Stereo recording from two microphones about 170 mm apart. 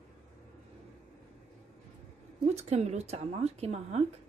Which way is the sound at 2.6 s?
40° right (ahead or behind).